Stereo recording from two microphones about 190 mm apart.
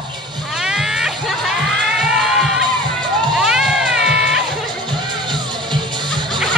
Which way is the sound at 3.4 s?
5° right (ahead or behind).